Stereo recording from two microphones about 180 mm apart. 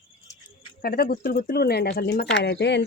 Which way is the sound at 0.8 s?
55° left (ahead or behind).